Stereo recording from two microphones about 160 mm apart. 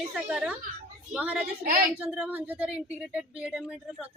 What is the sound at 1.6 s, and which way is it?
Speech, 65° right (ahead or behind).